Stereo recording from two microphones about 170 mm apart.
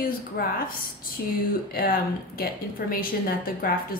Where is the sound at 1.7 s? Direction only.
60° left (ahead or behind).